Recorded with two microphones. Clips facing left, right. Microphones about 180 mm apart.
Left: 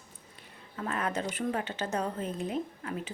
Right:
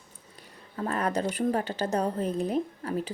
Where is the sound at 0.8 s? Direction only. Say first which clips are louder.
Right 4 dB; 35° right (ahead or behind).